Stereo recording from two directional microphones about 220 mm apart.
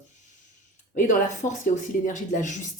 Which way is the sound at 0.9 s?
35° left (ahead or behind).